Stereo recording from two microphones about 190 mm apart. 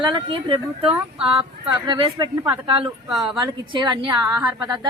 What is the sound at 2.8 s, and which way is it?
Speech, centre (ahead or behind).